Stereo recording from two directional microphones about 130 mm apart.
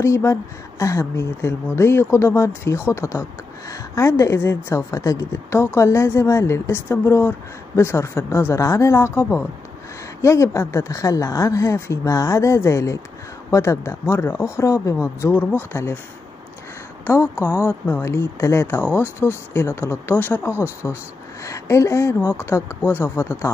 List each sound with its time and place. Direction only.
0.0 s speech: 20° left (ahead or behind)
17.0 s speech: 20° left (ahead or behind)